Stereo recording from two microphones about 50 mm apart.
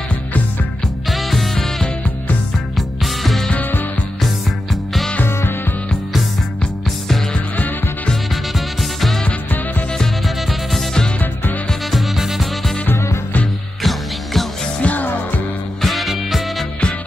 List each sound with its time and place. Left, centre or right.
1.1 s music: centre
3.0 s music: centre
7.5 s music: left
8.5 s music: centre
11.9 s music: centre
12.9 s music: left
13.8 s music: centre
14.8 s music: left
15.8 s music: centre